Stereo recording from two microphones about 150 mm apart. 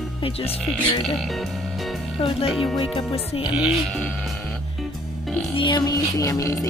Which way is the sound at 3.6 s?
Centre (ahead or behind).